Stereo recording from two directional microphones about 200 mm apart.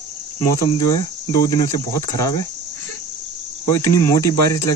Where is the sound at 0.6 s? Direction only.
20° left (ahead or behind).